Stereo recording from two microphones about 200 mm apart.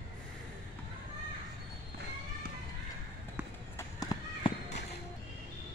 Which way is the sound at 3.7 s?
20° left (ahead or behind).